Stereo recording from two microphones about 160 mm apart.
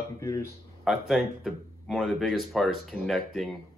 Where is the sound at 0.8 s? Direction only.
Centre (ahead or behind).